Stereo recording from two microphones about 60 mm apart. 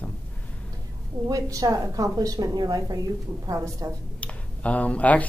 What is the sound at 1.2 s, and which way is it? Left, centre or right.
A woman's voice, right.